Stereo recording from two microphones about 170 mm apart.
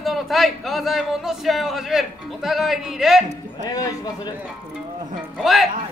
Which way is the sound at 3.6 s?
20° left (ahead or behind).